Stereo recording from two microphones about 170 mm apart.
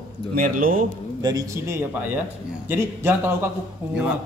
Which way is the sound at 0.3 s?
55° right (ahead or behind).